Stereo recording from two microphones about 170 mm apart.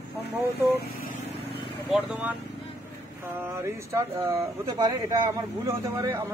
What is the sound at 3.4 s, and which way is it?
Speech, 15° right (ahead or behind).